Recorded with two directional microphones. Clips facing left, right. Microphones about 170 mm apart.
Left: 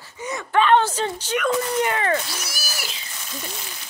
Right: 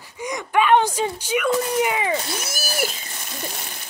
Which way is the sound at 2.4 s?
50° right (ahead or behind).